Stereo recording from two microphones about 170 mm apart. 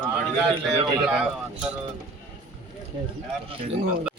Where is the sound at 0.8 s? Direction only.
25° right (ahead or behind).